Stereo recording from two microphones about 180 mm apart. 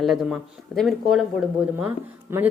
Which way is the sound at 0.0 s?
Centre (ahead or behind).